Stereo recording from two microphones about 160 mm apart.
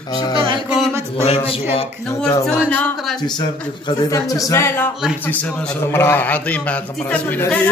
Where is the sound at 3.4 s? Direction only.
25° left (ahead or behind); by 7.6 s 10° left (ahead or behind).